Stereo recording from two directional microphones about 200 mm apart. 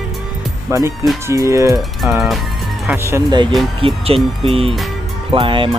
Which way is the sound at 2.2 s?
Centre (ahead or behind).